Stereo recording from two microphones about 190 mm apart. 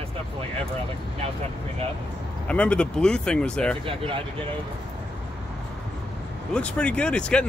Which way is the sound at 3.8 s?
30° right (ahead or behind).